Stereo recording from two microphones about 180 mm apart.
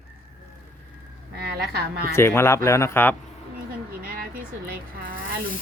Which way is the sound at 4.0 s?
50° right (ahead or behind).